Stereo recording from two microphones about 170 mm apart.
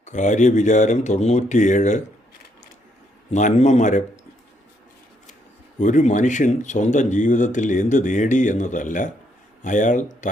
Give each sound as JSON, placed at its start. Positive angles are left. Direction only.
{"t": 0.0, "sound": "speech", "side_deg": 45}
{"t": 3.3, "sound": "speech", "side_deg": 45}
{"t": 5.8, "sound": "speech", "side_deg": 45}